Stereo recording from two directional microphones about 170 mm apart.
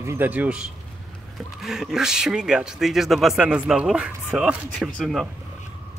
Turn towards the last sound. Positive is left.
turn(degrees=0)  # may be behind; listen again after turning